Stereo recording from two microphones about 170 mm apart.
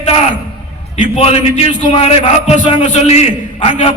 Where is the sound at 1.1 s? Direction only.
35° left (ahead or behind).